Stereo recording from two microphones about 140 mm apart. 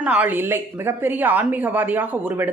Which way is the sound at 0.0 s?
10° right (ahead or behind).